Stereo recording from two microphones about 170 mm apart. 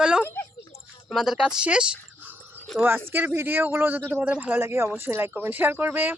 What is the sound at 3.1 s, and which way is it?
Speech, 10° right (ahead or behind).